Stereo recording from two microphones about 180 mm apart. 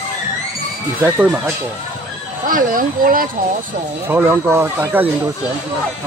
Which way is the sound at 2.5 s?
50° right (ahead or behind).